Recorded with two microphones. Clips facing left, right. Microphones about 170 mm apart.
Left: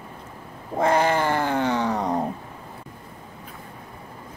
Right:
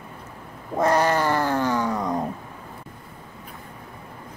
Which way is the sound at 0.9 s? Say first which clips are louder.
Even; 55° left (ahead or behind).